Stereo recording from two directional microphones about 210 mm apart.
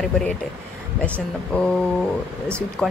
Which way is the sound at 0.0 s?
5° left (ahead or behind).